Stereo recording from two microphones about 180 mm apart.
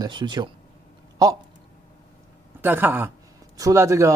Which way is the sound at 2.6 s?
10° right (ahead or behind).